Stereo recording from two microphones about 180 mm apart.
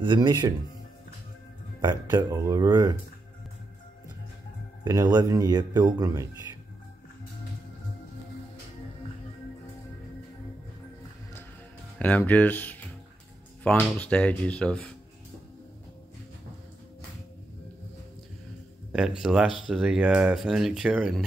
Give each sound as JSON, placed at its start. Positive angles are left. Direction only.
{"t": 0.0, "sound": "speech", "side_deg": -25}
{"t": 1.8, "sound": "speech", "side_deg": -25}
{"t": 4.8, "sound": "speech", "side_deg": -20}
{"t": 12.0, "sound": "speech", "side_deg": 10}
{"t": 13.7, "sound": "speech", "side_deg": 5}
{"t": 18.9, "sound": "speech", "side_deg": -5}